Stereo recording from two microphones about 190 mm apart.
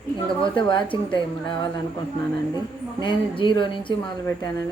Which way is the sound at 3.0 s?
25° left (ahead or behind).